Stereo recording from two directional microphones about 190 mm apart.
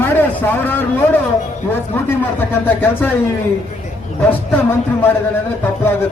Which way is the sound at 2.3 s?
10° left (ahead or behind).